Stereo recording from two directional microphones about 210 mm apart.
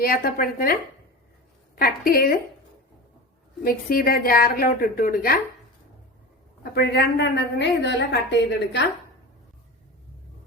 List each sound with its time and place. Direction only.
0.0 s a woman's voice: 45° left (ahead or behind)
3.6 s a woman's voice: 45° left (ahead or behind)
6.6 s a woman's voice: 50° left (ahead or behind)